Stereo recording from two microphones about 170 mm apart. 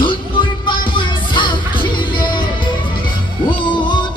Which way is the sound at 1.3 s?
30° left (ahead or behind).